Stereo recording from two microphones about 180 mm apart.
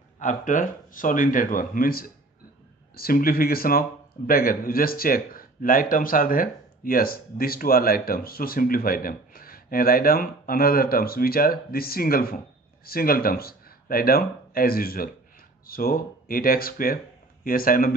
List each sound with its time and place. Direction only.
0.2 s speech: 45° left (ahead or behind)